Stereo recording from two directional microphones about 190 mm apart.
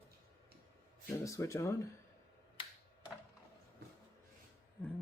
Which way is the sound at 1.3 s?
15° left (ahead or behind).